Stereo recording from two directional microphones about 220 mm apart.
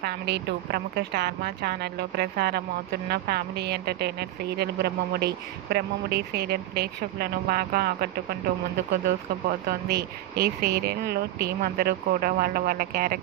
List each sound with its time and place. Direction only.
0.0 s speech: 50° right (ahead or behind)